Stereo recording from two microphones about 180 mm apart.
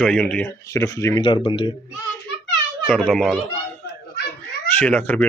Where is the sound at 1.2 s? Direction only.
30° left (ahead or behind).